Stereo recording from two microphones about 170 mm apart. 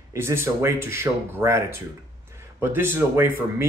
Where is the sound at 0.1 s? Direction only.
15° right (ahead or behind).